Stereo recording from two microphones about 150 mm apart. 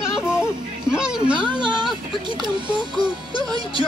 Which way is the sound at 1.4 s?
30° right (ahead or behind).